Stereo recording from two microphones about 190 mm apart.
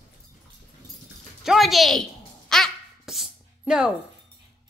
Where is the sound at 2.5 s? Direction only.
Centre (ahead or behind).